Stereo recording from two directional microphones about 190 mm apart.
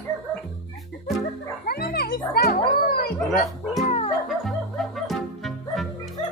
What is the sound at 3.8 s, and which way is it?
Music, 35° left (ahead or behind).